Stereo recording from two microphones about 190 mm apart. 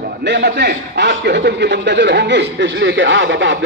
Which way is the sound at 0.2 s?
60° right (ahead or behind).